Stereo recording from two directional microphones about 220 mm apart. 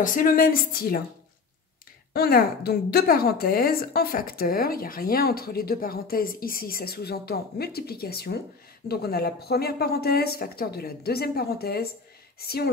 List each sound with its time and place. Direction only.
0.0 s a woman's voice: 40° left (ahead or behind)
2.1 s a woman's voice: 45° left (ahead or behind)